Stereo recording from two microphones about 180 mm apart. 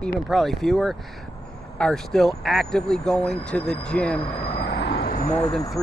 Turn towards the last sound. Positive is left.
turn(degrees=35)  # may be behind; listen again after turning